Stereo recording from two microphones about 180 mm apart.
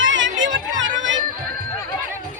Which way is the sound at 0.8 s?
90° right.